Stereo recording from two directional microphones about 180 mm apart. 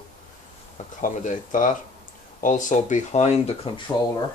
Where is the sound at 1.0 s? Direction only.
45° left (ahead or behind).